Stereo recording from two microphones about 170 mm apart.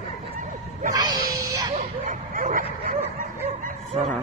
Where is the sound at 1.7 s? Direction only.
50° right (ahead or behind).